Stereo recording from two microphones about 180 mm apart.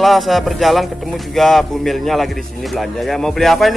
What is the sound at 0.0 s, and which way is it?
Speech, centre (ahead or behind).